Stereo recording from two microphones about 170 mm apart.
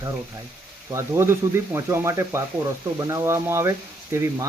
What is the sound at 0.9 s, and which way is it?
Speech, 15° right (ahead or behind).